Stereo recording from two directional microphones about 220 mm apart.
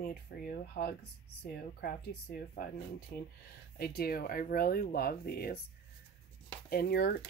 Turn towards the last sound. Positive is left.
turn(degrees=45)  # may be behind; listen again after turning